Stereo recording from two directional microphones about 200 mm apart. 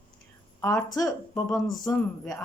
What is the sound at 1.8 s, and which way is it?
Speech, 15° left (ahead or behind).